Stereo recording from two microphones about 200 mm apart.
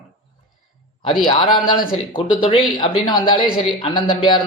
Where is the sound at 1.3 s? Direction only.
25° left (ahead or behind).